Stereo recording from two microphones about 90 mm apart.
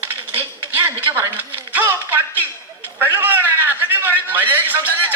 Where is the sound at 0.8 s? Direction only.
25° right (ahead or behind).